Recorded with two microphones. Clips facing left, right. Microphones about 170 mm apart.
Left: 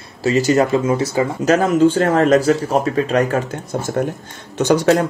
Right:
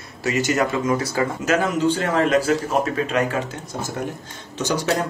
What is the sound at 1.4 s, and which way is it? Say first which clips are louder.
Speech: left 7 dB; 45° left (ahead or behind).